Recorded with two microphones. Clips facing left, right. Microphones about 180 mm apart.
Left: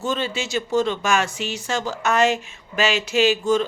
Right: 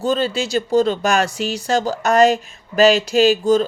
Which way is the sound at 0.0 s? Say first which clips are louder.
Right 6 dB; 35° right (ahead or behind).